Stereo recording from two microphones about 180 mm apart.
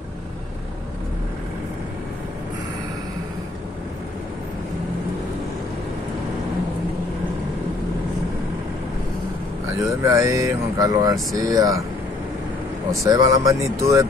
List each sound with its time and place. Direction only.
9.8 s speech: 15° right (ahead or behind)
13.0 s speech: 20° right (ahead or behind)